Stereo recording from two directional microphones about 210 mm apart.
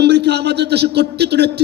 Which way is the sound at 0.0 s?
55° right (ahead or behind).